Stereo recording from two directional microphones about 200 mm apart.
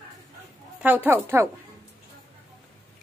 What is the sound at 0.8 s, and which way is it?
Speech, 10° right (ahead or behind).